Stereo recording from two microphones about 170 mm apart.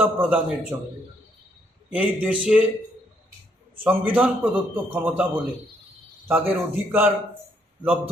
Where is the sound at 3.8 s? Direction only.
10° right (ahead or behind).